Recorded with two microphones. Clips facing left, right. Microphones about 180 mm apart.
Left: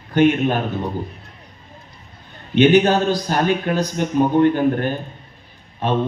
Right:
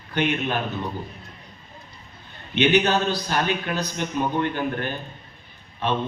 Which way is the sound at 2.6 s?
45° left (ahead or behind).